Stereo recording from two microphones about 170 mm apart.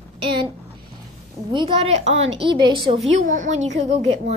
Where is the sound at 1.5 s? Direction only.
30° right (ahead or behind).